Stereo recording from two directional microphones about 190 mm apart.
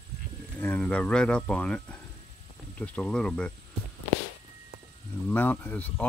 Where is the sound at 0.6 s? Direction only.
10° left (ahead or behind).